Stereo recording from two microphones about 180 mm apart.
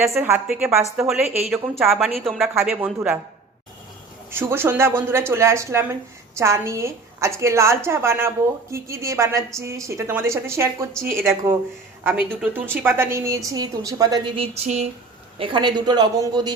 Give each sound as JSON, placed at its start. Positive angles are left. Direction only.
{"t": 0.2, "sound": "speech", "side_deg": -15}
{"t": 4.3, "sound": "a woman's voice", "side_deg": -15}